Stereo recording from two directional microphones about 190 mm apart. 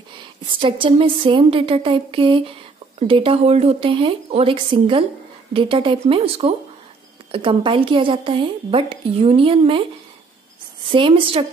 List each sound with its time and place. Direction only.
0.5 s a woman's voice: 25° right (ahead or behind)
10.9 s a woman's voice: 25° right (ahead or behind)